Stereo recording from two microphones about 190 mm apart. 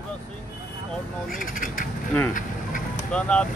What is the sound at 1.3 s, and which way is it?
Speech, 45° left (ahead or behind).